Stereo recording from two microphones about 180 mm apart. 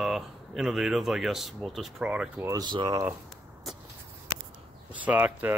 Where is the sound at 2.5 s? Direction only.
25° right (ahead or behind).